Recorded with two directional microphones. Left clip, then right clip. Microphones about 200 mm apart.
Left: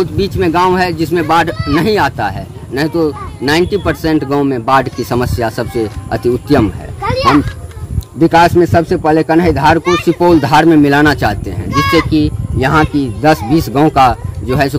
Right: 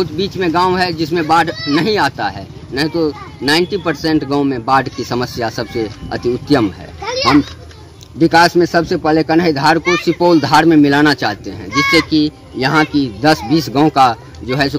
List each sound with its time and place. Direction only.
0.0 s speech: 10° left (ahead or behind)
8.2 s a man's voice: 5° left (ahead or behind)
11.8 s speech: 35° left (ahead or behind)
12.1 s speech: 5° left (ahead or behind)